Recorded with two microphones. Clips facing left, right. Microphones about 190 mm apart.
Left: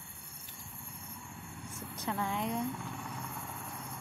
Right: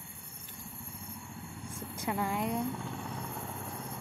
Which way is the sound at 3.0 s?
30° right (ahead or behind).